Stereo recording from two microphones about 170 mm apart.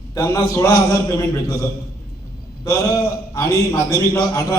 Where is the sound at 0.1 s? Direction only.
20° left (ahead or behind).